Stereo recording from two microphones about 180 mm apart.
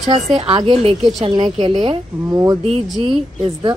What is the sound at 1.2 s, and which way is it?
A woman's voice, 25° right (ahead or behind).